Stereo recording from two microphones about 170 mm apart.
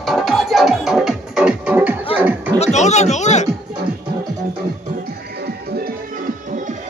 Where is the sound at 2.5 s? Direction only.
40° left (ahead or behind).